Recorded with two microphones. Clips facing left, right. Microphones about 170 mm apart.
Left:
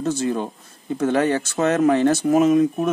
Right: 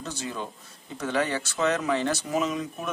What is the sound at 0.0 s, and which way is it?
Speech, 50° left (ahead or behind).